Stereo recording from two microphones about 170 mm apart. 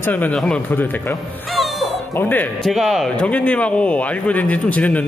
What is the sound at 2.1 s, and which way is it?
Speech, 10° left (ahead or behind).